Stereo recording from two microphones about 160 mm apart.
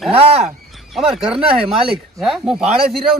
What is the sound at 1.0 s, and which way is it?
A man's voice, 5° right (ahead or behind).